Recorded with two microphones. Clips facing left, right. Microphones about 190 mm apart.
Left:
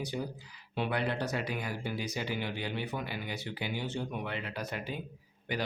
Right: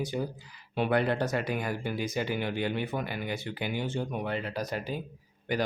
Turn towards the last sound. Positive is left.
turn(degrees=-45)  # may be behind; listen again after turning